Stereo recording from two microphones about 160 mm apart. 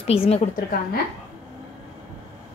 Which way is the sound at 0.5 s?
65° left (ahead or behind).